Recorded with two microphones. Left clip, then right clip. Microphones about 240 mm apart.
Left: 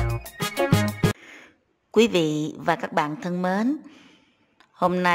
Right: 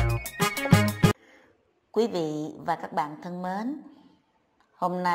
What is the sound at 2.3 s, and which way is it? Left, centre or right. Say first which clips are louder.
Speech: left 5 dB; left.